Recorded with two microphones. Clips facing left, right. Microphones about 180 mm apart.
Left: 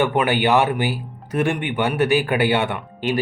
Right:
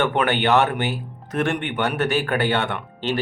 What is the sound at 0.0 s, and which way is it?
Speech, 10° left (ahead or behind).